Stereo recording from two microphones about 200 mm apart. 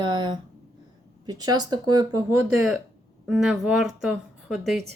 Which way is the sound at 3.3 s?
5° right (ahead or behind).